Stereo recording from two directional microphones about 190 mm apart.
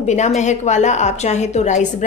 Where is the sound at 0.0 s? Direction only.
40° left (ahead or behind).